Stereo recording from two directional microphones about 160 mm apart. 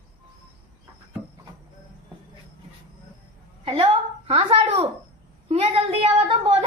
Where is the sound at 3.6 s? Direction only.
35° right (ahead or behind).